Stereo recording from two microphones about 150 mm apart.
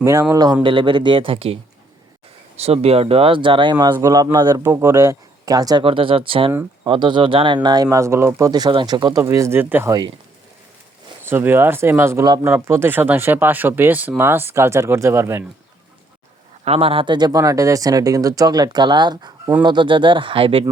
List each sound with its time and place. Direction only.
0.0 s speech: 25° right (ahead or behind)
0.6 s speech: 35° right (ahead or behind)
2.6 s speech: 40° right (ahead or behind); by 5.8 s 25° right (ahead or behind)
5.8 s speech: 35° right (ahead or behind)
9.2 s speech: 20° right (ahead or behind)
11.2 s speech: 15° right (ahead or behind)
16.6 s speech: 40° right (ahead or behind)